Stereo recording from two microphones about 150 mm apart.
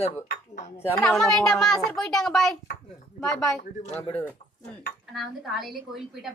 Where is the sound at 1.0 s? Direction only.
Centre (ahead or behind).